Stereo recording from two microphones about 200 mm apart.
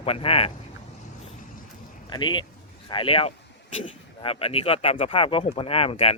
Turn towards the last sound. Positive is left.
turn(degrees=30)  # may be behind; listen again after turning